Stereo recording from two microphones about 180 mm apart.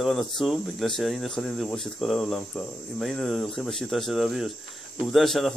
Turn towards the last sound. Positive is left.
turn(degrees=0)  # may be behind; listen again after turning